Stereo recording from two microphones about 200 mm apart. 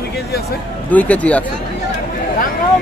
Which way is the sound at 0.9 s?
5° left (ahead or behind).